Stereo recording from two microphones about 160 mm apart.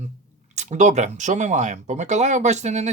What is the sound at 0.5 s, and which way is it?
Speech, 45° right (ahead or behind).